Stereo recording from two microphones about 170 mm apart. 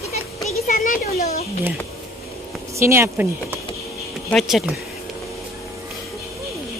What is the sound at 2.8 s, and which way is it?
Speech, 15° right (ahead or behind).